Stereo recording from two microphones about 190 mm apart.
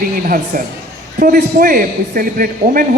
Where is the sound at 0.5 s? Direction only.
50° right (ahead or behind).